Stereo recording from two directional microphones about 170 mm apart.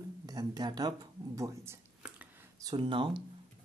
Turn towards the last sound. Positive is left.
turn(degrees=-30)  # may be behind; listen again after turning